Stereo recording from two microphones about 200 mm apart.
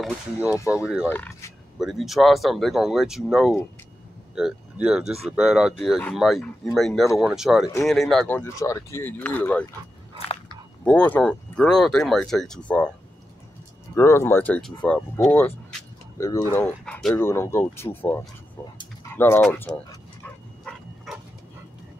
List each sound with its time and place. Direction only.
0.0 s speech: 5° right (ahead or behind)
1.0 s speech: 10° left (ahead or behind)
1.8 s speech: centre (ahead or behind)
10.8 s speech: 5° left (ahead or behind)
13.9 s speech: 15° left (ahead or behind)
20.6 s dog: centre (ahead or behind)